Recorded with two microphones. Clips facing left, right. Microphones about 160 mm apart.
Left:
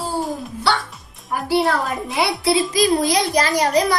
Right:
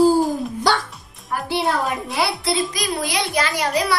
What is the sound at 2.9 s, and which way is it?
A child's voice, 40° left (ahead or behind).